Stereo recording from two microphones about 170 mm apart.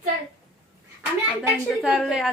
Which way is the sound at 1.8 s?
Centre (ahead or behind).